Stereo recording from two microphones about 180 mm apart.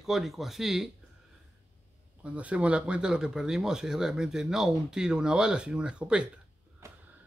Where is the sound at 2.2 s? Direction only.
5° right (ahead or behind).